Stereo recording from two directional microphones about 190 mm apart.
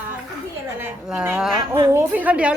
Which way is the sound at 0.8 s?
10° right (ahead or behind).